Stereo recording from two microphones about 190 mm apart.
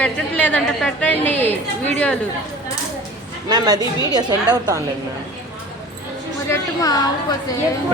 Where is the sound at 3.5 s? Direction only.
20° right (ahead or behind).